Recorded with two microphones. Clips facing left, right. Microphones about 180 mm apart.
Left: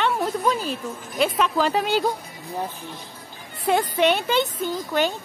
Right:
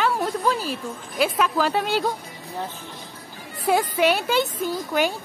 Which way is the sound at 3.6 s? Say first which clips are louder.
Even; 10° right (ahead or behind).